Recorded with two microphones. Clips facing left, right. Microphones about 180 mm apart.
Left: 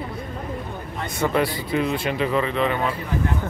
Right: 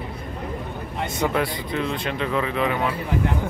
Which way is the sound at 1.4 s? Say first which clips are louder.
Left 3 dB; 5° left (ahead or behind).